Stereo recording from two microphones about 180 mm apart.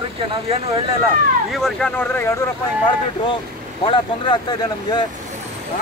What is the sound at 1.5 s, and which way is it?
Speech, centre (ahead or behind).